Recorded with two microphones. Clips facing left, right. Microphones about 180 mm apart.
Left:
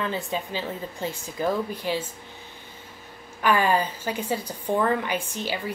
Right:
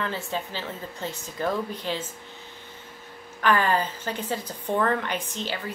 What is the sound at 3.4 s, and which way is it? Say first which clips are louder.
A woman's voice: left 1 dB; 10° left (ahead or behind).